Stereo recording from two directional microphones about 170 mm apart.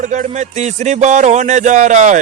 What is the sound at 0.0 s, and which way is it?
A man's voice, 45° right (ahead or behind).